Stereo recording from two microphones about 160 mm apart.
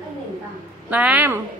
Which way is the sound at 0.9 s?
10° right (ahead or behind).